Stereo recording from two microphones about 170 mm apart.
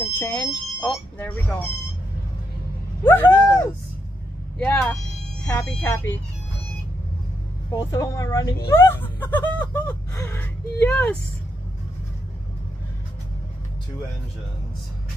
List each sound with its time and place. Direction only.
0.0 s speech: 15° left (ahead or behind)
3.0 s a sound: 15° left (ahead or behind)
4.6 s speech: 15° left (ahead or behind)
7.7 s speech: 20° left (ahead or behind)